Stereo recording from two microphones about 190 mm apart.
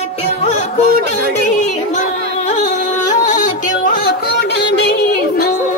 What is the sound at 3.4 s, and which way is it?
Music, 45° left (ahead or behind).